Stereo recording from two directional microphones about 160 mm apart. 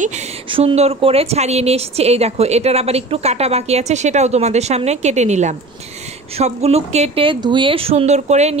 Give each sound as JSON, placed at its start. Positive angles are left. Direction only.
{"t": 0.0, "sound": "speech", "side_deg": -45}
{"t": 0.5, "sound": "a woman's voice", "side_deg": -35}